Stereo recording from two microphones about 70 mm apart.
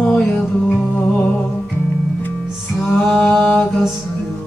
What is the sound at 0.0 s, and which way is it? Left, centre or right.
Music, centre.